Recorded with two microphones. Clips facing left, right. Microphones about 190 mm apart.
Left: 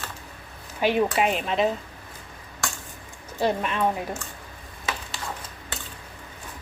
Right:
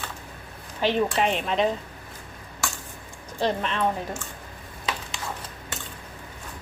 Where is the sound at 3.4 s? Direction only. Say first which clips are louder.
Left 1 dB; 10° left (ahead or behind).